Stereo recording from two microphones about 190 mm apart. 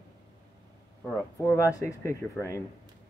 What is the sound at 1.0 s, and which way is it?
Speech, 15° left (ahead or behind).